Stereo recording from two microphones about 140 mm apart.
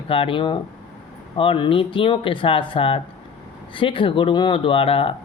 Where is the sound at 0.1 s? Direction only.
40° left (ahead or behind).